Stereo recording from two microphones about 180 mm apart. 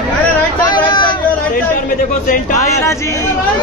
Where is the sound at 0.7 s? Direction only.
25° left (ahead or behind).